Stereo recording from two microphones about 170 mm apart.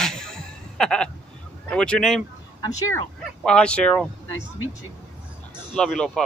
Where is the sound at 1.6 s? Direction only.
5° left (ahead or behind).